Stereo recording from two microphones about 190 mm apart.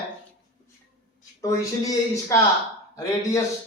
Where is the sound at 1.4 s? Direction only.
15° left (ahead or behind).